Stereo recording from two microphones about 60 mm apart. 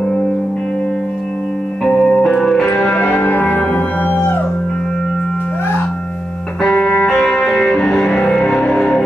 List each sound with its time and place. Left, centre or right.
1.9 s music: centre
2.9 s music: left
6.6 s music: centre